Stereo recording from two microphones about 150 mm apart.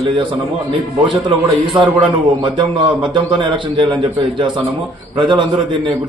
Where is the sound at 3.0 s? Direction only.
30° right (ahead or behind).